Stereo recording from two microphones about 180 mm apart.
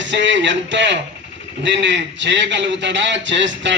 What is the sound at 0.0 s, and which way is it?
A man's voice, 85° right.